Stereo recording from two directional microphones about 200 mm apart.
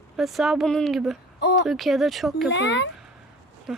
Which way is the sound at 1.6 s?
Centre (ahead or behind).